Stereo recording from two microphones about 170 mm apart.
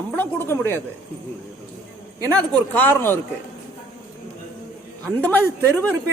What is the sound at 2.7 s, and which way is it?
Speech, 10° left (ahead or behind).